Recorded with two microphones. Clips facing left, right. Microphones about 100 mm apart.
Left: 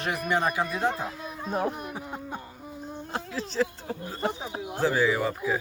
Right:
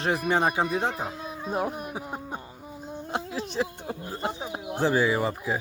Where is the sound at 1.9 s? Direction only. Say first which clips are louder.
Right 1 dB; 20° right (ahead or behind).